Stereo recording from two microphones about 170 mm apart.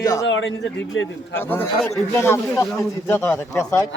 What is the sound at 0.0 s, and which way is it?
Speech, 20° left (ahead or behind).